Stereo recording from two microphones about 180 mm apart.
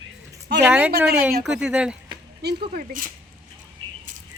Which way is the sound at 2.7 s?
50° right (ahead or behind).